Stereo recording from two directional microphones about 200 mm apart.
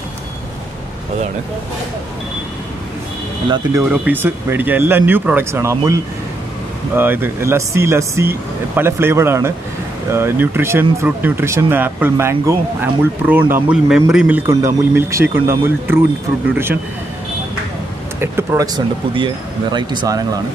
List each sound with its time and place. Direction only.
3.4 s speech: 20° right (ahead or behind)
3.9 s speech: 10° right (ahead or behind)
18.2 s speech: 10° right (ahead or behind)